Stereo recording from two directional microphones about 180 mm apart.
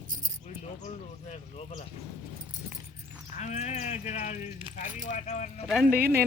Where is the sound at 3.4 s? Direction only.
40° left (ahead or behind).